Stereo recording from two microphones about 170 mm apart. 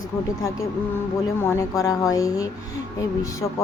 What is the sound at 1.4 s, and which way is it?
A woman's voice, 15° left (ahead or behind).